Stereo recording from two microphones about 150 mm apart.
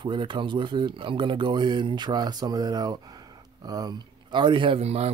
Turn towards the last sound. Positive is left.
turn(degrees=-45)  # may be behind; listen again after turning